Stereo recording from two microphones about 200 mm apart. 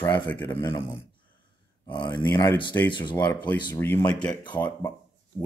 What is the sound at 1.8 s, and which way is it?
Speech, 25° left (ahead or behind).